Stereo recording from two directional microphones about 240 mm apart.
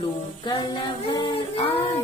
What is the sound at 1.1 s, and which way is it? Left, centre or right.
Speech, left.